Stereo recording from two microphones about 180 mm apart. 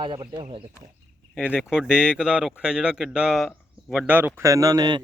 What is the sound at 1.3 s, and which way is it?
Speech, 5° right (ahead or behind).